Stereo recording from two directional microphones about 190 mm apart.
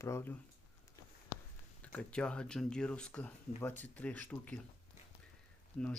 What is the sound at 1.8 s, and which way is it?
Speech, 5° left (ahead or behind).